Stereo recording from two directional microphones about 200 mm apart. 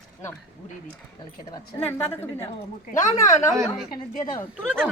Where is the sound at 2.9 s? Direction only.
40° left (ahead or behind).